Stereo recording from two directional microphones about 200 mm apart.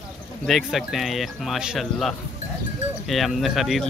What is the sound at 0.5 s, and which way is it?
Speech, centre (ahead or behind).